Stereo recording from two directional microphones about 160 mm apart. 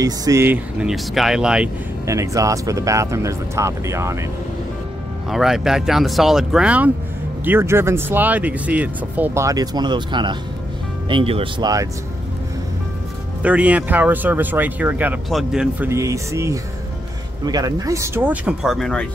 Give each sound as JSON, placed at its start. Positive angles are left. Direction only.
{"t": 0.0, "sound": "speech", "side_deg": -20}
{"t": 2.0, "sound": "speech", "side_deg": -20}
{"t": 5.3, "sound": "speech", "side_deg": 0}
{"t": 11.6, "sound": "speech", "side_deg": -20}
{"t": 13.4, "sound": "speech", "side_deg": -10}
{"t": 15.9, "sound": "speech", "side_deg": -20}